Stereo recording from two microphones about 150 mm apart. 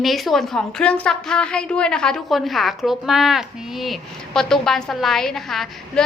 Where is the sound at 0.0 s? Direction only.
Centre (ahead or behind).